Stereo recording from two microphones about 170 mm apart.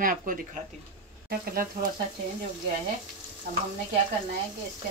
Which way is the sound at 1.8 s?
60° right (ahead or behind).